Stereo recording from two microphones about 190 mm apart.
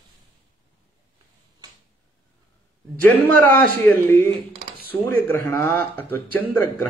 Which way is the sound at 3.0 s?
10° left (ahead or behind).